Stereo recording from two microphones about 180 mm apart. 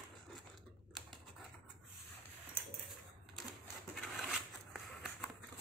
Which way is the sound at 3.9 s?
Centre (ahead or behind).